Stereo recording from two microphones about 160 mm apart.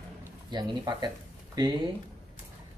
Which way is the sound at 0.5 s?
25° right (ahead or behind).